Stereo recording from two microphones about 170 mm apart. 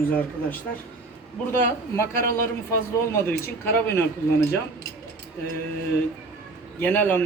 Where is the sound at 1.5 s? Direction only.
15° left (ahead or behind).